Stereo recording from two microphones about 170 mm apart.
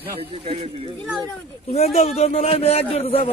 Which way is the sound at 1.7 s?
35° left (ahead or behind).